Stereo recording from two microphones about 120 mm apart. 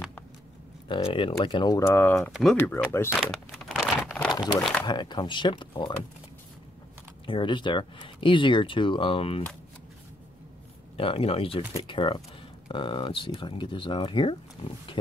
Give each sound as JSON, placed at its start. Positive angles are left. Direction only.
{"t": 0.8, "sound": "speech", "side_deg": 45}
{"t": 1.8, "sound": "speech", "side_deg": 20}
{"t": 3.6, "sound": "crumpling", "side_deg": 0}
{"t": 4.3, "sound": "speech", "side_deg": 35}
{"t": 7.2, "sound": "speech", "side_deg": 45}
{"t": 11.0, "sound": "speech", "side_deg": 50}